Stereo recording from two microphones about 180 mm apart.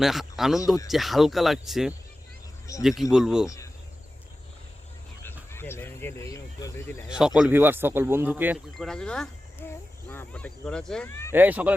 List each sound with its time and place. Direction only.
0.0 s speech: centre (ahead or behind)
5.5 s speech: 15° left (ahead or behind)
7.1 s speech: 5° right (ahead or behind)
8.8 s speech: 5° left (ahead or behind)
11.3 s speech: 10° right (ahead or behind)